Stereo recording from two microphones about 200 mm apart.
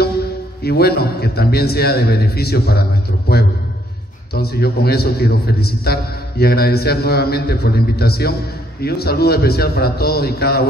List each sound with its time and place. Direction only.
0.7 s a man's voice: 55° left (ahead or behind)